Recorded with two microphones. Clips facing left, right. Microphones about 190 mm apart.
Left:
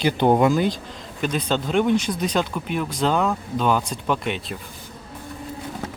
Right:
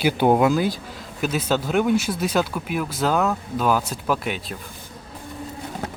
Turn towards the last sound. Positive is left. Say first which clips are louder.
# even
turn(degrees=0)  # may be behind; listen again after turning